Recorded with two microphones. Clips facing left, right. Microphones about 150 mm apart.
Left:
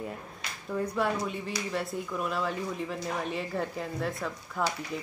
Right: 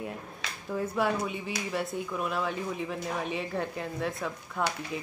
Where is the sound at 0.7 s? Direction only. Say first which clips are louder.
Right 1 dB; centre (ahead or behind).